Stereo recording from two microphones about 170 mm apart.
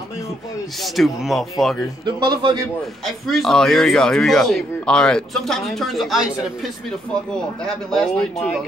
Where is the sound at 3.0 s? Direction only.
Centre (ahead or behind).